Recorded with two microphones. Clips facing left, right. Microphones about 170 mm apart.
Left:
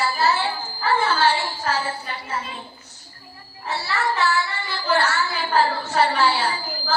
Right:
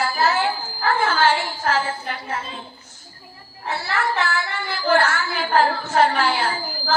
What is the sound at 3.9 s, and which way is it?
A woman's voice, 50° right (ahead or behind).